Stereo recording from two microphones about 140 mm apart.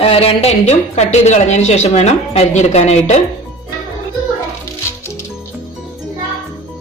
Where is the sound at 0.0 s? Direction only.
45° left (ahead or behind).